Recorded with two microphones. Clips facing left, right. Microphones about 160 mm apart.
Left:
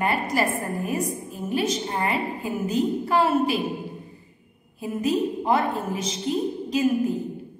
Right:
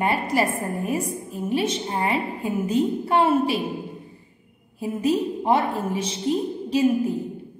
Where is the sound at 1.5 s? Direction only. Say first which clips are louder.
Right 1 dB; 30° right (ahead or behind).